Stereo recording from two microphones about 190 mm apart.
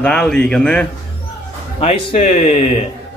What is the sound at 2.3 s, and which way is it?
Speech, 40° left (ahead or behind).